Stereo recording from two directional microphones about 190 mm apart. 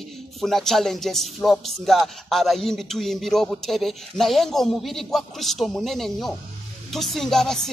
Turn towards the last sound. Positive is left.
turn(degrees=0)  # may be behind; listen again after turning